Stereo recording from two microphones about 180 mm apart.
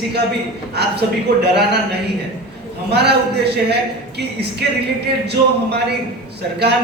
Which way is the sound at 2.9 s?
65° right (ahead or behind).